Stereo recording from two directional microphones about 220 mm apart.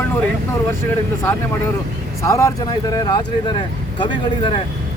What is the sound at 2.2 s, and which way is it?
A man's voice, 15° left (ahead or behind).